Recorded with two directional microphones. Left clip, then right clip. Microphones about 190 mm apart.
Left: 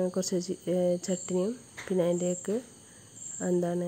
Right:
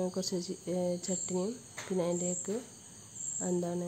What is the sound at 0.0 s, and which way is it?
Speech, 25° left (ahead or behind).